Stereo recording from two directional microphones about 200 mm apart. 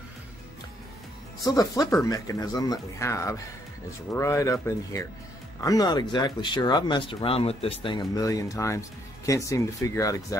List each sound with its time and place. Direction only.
1.4 s speech: 15° left (ahead or behind)